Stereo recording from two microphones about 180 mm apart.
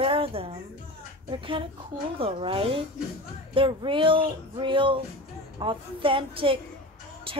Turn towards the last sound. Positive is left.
turn(degrees=-30)  # may be behind; listen again after turning